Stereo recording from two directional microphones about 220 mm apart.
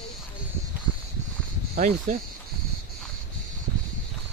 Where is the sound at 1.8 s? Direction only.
35° right (ahead or behind).